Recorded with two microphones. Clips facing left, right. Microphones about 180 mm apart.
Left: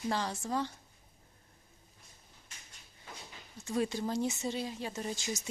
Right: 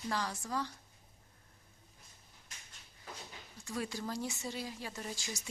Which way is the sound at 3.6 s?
25° left (ahead or behind).